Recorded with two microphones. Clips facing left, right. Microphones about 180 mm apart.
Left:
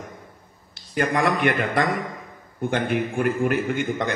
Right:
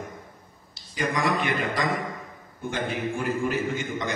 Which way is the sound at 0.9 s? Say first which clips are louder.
Left 4 dB; 55° left (ahead or behind).